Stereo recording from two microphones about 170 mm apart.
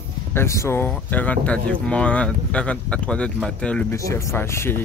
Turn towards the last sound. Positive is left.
turn(degrees=15)  # may be behind; listen again after turning